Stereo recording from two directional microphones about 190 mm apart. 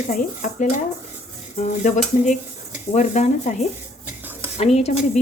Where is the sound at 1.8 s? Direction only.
40° left (ahead or behind).